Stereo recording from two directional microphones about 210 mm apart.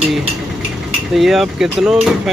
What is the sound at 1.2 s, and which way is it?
Speech, centre (ahead or behind).